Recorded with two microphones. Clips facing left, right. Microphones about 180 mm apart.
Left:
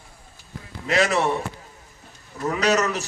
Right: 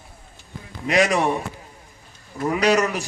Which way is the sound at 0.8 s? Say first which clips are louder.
Right 2 dB; 15° right (ahead or behind).